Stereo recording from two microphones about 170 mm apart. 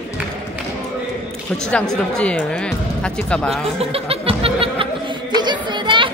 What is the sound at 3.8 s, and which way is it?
Music, 35° right (ahead or behind).